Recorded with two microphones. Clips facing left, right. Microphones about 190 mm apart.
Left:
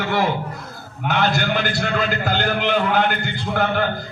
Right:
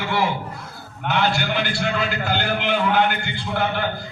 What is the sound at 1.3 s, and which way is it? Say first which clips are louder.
A man's voice: left 2 dB; 45° left (ahead or behind).